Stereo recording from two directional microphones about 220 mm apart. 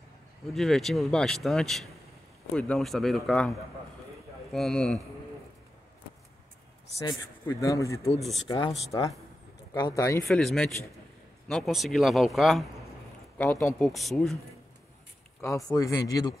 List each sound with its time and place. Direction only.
0.5 s a man's voice: centre (ahead or behind)
7.0 s a man's voice: 15° left (ahead or behind)
8.2 s a man's voice: centre (ahead or behind)
8.5 s speech: 20° left (ahead or behind)
9.8 s a man's voice: 15° left (ahead or behind)
10.2 s a man's voice: centre (ahead or behind)
15.4 s a man's voice: 15° left (ahead or behind)